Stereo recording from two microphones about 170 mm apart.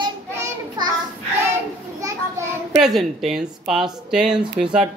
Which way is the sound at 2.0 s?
15° right (ahead or behind).